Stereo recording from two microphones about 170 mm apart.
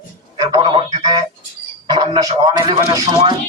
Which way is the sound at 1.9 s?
25° right (ahead or behind).